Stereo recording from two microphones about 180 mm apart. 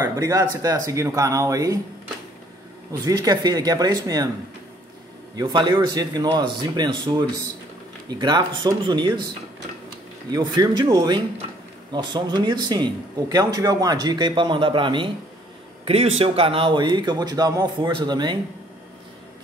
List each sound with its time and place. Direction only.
0.0 s speech: 20° right (ahead or behind)
3.0 s speech: 20° right (ahead or behind)
5.3 s speech: 25° right (ahead or behind)
10.3 s speech: 25° right (ahead or behind)